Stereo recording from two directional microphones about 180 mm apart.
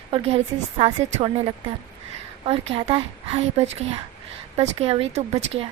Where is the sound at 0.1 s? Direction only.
35° right (ahead or behind).